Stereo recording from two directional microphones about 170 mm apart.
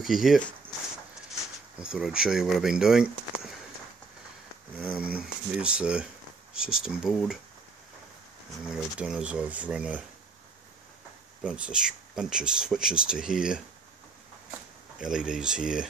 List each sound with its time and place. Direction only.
0.0 s speech: centre (ahead or behind)
1.8 s speech: 5° right (ahead or behind)
4.7 s speech: 10° right (ahead or behind)
8.6 s speech: 5° right (ahead or behind)
11.4 s speech: 5° right (ahead or behind)
15.0 s speech: 5° right (ahead or behind)